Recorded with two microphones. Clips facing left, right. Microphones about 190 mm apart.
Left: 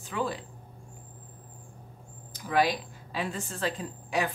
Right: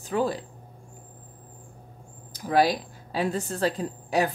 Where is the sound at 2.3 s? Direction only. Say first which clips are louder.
Right 4 dB; 40° right (ahead or behind).